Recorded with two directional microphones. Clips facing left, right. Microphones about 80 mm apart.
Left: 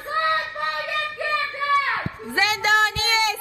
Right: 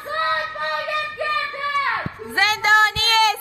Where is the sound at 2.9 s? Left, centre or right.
Right.